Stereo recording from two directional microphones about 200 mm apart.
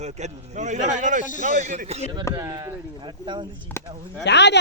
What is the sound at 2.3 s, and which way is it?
Speech, 20° right (ahead or behind).